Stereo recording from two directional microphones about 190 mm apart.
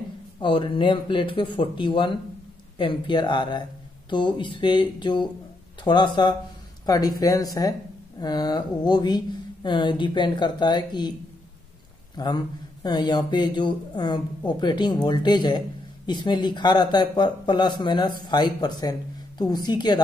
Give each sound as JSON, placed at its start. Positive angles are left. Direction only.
{"t": 0.4, "sound": "speech", "side_deg": 25}
{"t": 12.2, "sound": "speech", "side_deg": 20}